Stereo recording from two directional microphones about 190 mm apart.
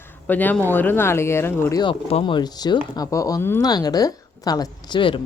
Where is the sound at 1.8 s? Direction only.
30° left (ahead or behind).